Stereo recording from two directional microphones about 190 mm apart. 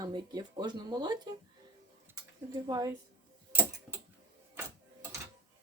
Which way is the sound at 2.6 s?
20° right (ahead or behind).